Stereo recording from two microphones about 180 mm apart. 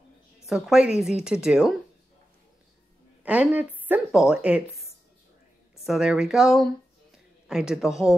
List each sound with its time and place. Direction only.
0.5 s speech: 5° right (ahead or behind)
3.3 s a woman's voice: 10° right (ahead or behind)
5.9 s speech: 5° right (ahead or behind)